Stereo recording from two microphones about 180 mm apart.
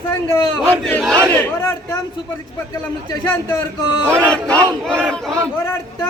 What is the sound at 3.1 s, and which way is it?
Speech, 15° left (ahead or behind).